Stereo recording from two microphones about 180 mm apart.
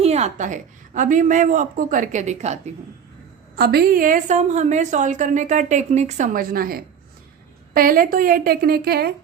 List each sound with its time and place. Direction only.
0.0 s a woman's voice: 35° right (ahead or behind)
3.5 s a woman's voice: 60° right (ahead or behind)